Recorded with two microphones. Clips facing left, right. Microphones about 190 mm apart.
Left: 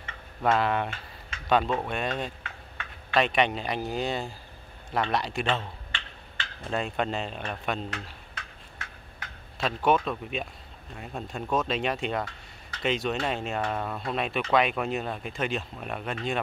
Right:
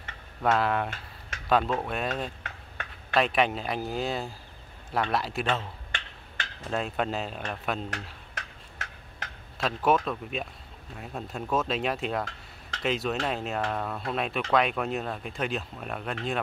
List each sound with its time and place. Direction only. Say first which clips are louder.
0.4 s speech: even; centre (ahead or behind)
2.4 s a sound: right 1 dB; 45° right (ahead or behind)
3.2 s speech: even; centre (ahead or behind)
5.9 s a sound: right 1 dB; 45° right (ahead or behind)
6.7 s speech: even; centre (ahead or behind)
9.6 s speech: even; centre (ahead or behind)